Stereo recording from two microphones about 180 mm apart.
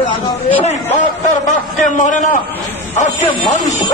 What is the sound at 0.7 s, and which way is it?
A man's voice, 40° left (ahead or behind).